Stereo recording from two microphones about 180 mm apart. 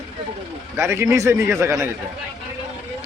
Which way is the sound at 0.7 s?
15° right (ahead or behind).